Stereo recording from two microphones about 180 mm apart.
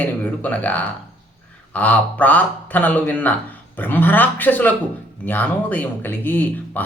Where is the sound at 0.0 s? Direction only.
10° left (ahead or behind).